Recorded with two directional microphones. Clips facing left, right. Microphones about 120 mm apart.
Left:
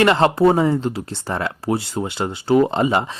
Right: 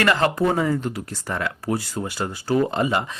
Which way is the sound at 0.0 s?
25° left (ahead or behind).